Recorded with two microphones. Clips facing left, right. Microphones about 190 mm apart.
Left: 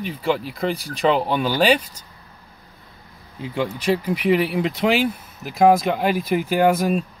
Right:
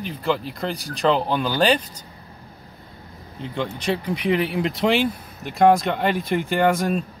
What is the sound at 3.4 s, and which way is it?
Speech, 5° left (ahead or behind).